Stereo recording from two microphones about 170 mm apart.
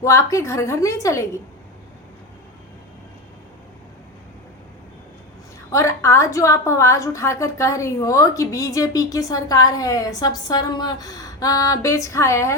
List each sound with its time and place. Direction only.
0.0 s a woman's voice: 20° left (ahead or behind)
5.7 s a woman's voice: 15° left (ahead or behind)